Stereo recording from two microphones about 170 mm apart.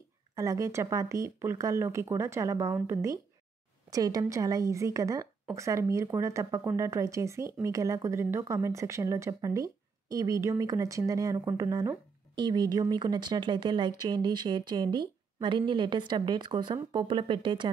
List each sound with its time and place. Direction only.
0.4 s a woman's voice: 20° right (ahead or behind)